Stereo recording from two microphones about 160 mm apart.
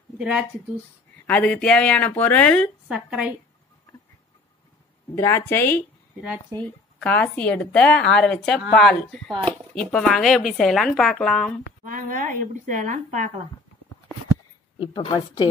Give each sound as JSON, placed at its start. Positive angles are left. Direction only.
{"t": 0.2, "sound": "speech", "side_deg": -5}
{"t": 1.2, "sound": "speech", "side_deg": 10}
{"t": 2.9, "sound": "speech", "side_deg": -5}
{"t": 5.1, "sound": "speech", "side_deg": 15}
{"t": 11.8, "sound": "speech", "side_deg": -55}
{"t": 14.8, "sound": "a woman's voice", "side_deg": 30}